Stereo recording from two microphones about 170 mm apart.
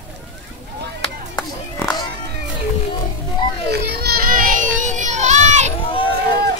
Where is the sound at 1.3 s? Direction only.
25° left (ahead or behind).